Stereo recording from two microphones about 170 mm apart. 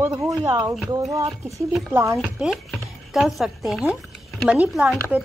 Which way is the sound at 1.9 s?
15° right (ahead or behind).